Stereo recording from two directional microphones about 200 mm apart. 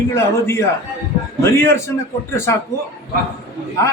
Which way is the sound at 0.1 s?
10° left (ahead or behind).